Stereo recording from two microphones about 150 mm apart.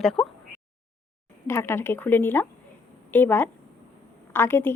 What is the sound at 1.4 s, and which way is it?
A woman's voice, 15° left (ahead or behind).